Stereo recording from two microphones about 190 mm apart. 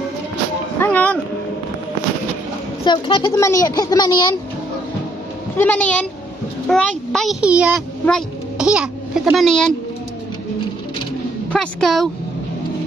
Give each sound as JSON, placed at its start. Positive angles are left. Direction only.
{"t": 0.7, "sound": "a sound", "side_deg": 10}
{"t": 2.8, "sound": "a woman's voice", "side_deg": 25}
{"t": 5.6, "sound": "a child's voice", "side_deg": 10}
{"t": 11.5, "sound": "a woman's voice", "side_deg": 5}